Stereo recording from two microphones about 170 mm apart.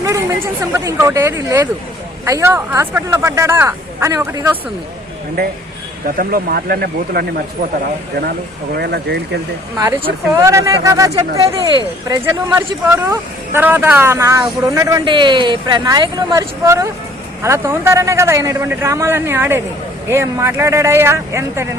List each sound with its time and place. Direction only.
0.0 s speech: 20° right (ahead or behind)
6.1 s speech: 60° right (ahead or behind)
8.8 s speech: 75° right (ahead or behind)
9.7 s a man's voice: 20° right (ahead or behind)